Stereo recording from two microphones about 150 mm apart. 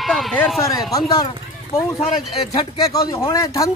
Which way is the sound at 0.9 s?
30° left (ahead or behind).